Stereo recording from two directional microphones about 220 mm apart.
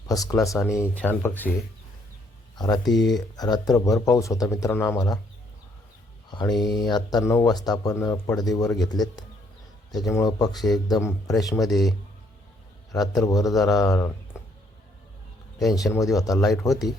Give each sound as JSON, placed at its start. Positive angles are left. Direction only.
{"t": 0.1, "sound": "speech", "side_deg": 15}
{"t": 2.6, "sound": "speech", "side_deg": 20}
{"t": 2.8, "sound": "speech", "side_deg": 0}
{"t": 3.3, "sound": "speech", "side_deg": 15}
{"t": 6.7, "sound": "speech", "side_deg": 20}
{"t": 9.9, "sound": "speech", "side_deg": 15}
{"t": 11.6, "sound": "speech", "side_deg": 0}
{"t": 12.9, "sound": "speech", "side_deg": 15}
{"t": 15.6, "sound": "speech", "side_deg": 15}
{"t": 16.4, "sound": "speech", "side_deg": 0}